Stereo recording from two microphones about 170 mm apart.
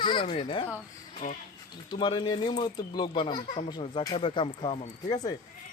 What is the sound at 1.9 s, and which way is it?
A man's voice, 25° left (ahead or behind).